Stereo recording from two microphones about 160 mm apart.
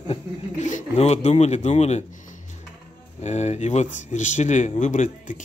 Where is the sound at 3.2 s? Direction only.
45° left (ahead or behind).